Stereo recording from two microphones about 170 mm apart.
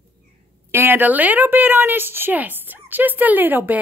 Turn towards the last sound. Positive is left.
turn(degrees=-10)  # may be behind; listen again after turning